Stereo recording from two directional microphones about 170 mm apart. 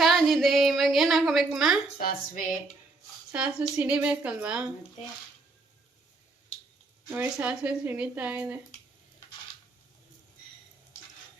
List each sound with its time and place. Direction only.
0.0 s a sound: centre (ahead or behind)
2.0 s speech: 60° left (ahead or behind)
3.3 s speech: 5° right (ahead or behind)
7.1 s speech: 10° right (ahead or behind)